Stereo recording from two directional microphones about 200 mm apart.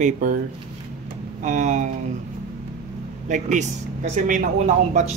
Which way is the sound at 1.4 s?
40° right (ahead or behind).